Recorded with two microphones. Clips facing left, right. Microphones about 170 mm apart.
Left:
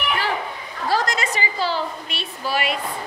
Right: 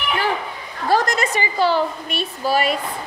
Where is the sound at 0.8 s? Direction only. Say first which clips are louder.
Right 4 dB; 50° right (ahead or behind).